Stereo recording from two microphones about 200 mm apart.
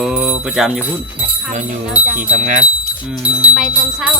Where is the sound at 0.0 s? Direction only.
5° right (ahead or behind).